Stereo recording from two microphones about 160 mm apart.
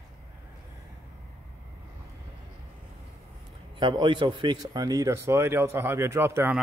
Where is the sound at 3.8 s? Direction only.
30° right (ahead or behind); by 6.6 s 15° right (ahead or behind).